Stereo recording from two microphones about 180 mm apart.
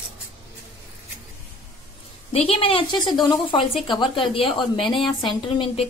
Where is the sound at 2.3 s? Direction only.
30° left (ahead or behind).